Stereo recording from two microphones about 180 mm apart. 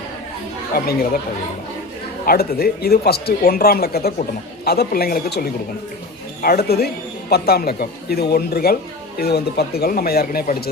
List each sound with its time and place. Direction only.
0.7 s speech: 55° left (ahead or behind)
2.2 s speech: 55° left (ahead or behind)